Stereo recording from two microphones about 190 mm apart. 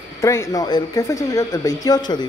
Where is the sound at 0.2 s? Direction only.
15° left (ahead or behind).